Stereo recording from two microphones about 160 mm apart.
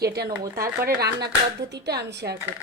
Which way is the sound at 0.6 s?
75° right (ahead or behind).